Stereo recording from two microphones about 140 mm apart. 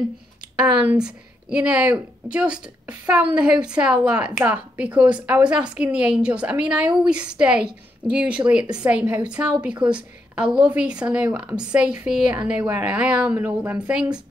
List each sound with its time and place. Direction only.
0.6 s a woman's voice: 10° right (ahead or behind)
9.0 s a woman's voice: 20° right (ahead or behind)
9.3 s a woman's voice: 10° right (ahead or behind)